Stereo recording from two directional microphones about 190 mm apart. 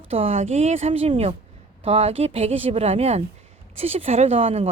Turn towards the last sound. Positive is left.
turn(degrees=-30)  # may be behind; listen again after turning